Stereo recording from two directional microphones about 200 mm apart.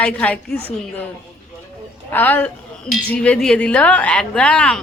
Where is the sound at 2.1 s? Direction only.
10° left (ahead or behind).